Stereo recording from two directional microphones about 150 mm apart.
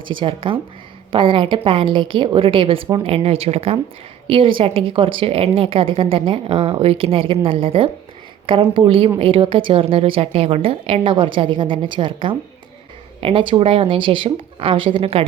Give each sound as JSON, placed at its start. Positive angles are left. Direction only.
{"t": 0.0, "sound": "speech", "side_deg": -35}